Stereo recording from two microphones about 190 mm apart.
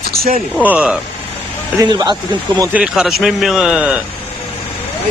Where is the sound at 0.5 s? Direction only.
5° right (ahead or behind).